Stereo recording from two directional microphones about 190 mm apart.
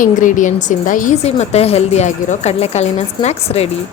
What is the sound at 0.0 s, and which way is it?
A woman's voice, 45° left (ahead or behind).